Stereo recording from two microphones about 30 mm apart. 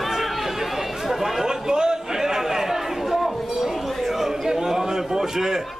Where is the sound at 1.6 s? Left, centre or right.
Right.